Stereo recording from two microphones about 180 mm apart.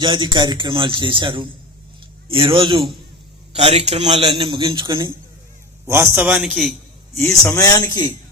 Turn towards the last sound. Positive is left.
turn(degrees=20)  # may be behind; listen again after turning